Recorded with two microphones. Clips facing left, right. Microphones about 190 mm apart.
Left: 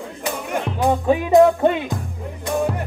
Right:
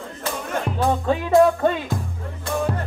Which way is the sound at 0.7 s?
15° left (ahead or behind).